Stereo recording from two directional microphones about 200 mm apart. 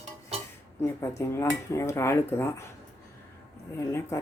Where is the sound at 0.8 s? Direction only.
15° left (ahead or behind).